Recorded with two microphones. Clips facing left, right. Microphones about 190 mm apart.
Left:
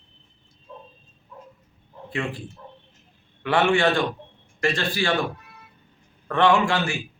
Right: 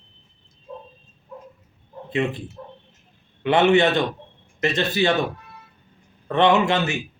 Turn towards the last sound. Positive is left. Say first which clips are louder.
# right 2 dB
turn(degrees=-20)  # may be behind; listen again after turning